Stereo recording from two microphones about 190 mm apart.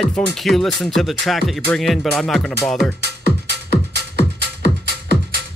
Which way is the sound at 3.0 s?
60° right (ahead or behind).